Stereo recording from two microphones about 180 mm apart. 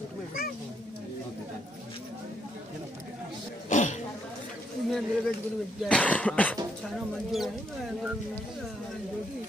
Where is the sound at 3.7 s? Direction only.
45° left (ahead or behind).